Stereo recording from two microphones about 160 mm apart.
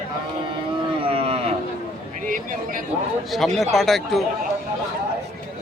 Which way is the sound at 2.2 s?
60° right (ahead or behind).